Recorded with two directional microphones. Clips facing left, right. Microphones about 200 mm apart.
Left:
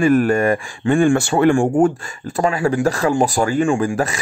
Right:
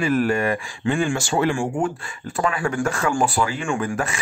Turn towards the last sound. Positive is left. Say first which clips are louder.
# left 5 dB
turn(degrees=35)  # may be behind; listen again after turning